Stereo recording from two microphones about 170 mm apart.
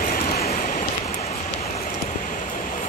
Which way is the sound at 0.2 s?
40° left (ahead or behind).